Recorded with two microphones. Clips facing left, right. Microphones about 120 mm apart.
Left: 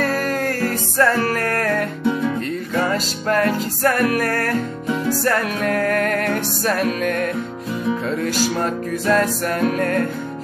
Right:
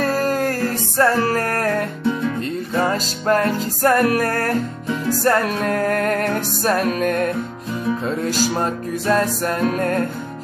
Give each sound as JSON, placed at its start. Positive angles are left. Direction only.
{"t": 0.2, "sound": "music", "side_deg": -35}